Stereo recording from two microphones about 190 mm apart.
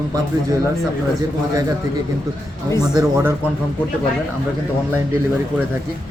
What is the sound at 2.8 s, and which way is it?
Speech, 15° right (ahead or behind).